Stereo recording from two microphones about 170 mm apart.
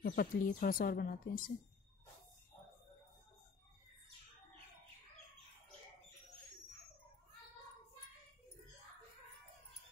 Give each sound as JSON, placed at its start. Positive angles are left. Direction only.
{"t": 0.0, "sound": "speech", "side_deg": 55}